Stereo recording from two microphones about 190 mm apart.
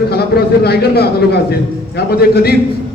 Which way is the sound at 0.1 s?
55° left (ahead or behind).